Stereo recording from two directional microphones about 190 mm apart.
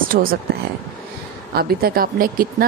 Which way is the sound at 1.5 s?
55° right (ahead or behind).